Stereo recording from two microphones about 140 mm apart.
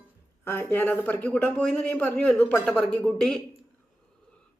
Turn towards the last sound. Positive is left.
turn(degrees=5)  # may be behind; listen again after turning